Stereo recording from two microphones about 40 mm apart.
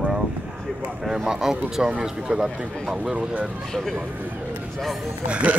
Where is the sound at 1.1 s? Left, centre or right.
Centre.